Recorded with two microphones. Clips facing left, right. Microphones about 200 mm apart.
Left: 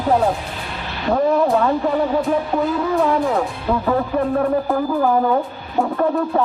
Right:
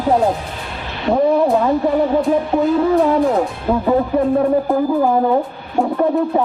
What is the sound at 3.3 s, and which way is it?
Speech, 20° right (ahead or behind).